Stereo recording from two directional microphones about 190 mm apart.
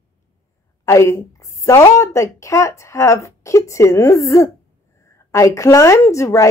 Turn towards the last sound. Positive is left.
turn(degrees=15)  # may be behind; listen again after turning